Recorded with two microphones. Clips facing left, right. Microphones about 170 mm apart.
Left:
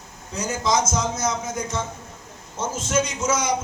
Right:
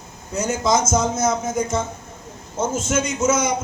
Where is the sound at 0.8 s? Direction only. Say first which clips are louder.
Right 5 dB; 25° right (ahead or behind).